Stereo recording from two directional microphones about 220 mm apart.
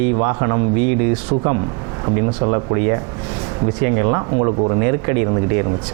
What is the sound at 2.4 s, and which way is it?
Speech, 25° right (ahead or behind).